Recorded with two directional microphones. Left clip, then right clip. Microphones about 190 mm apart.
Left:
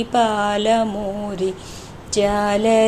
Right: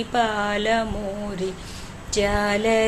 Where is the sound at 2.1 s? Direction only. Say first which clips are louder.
Left 4 dB; 15° left (ahead or behind).